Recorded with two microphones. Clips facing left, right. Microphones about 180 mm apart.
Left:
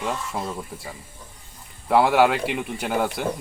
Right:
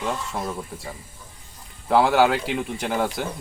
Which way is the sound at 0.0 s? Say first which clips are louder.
Even; centre (ahead or behind).